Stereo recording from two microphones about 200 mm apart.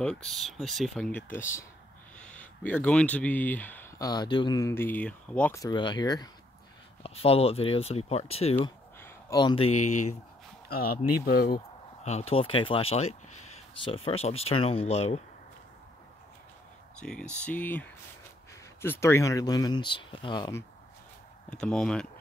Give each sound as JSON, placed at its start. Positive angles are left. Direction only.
{"t": 0.0, "sound": "speech", "side_deg": 5}
{"t": 9.0, "sound": "a sound", "side_deg": 20}
{"t": 9.8, "sound": "speech", "side_deg": 35}
{"t": 11.2, "sound": "speech", "side_deg": 50}
{"t": 12.0, "sound": "speech", "side_deg": 35}
{"t": 17.0, "sound": "speech", "side_deg": 5}
{"t": 21.5, "sound": "speech", "side_deg": 5}